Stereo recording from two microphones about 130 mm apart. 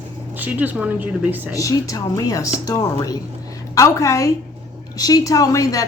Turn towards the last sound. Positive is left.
turn(degrees=25)  # may be behind; listen again after turning